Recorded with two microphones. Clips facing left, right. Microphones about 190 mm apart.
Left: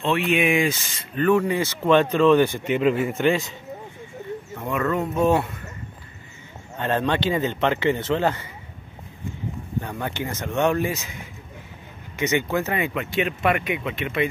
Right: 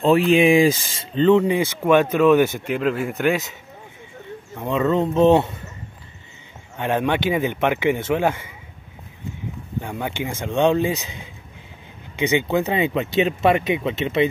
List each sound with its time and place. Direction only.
0.0 s speech: 35° right (ahead or behind)
1.1 s speech: 20° right (ahead or behind); by 3.4 s centre (ahead or behind)
4.6 s speech: 20° right (ahead or behind)
6.8 s speech: 10° right (ahead or behind)
9.8 s speech: 15° right (ahead or behind)
12.3 s speech: 15° right (ahead or behind)